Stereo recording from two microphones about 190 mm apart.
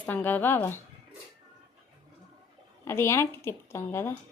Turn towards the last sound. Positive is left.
turn(degrees=15)  # may be behind; listen again after turning